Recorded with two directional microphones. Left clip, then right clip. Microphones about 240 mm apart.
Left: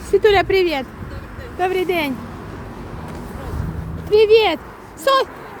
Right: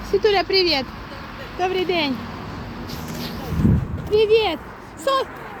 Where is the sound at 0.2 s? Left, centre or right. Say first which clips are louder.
Left 3 dB; centre.